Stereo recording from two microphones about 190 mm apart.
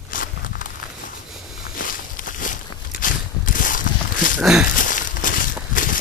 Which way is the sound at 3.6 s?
45° left (ahead or behind).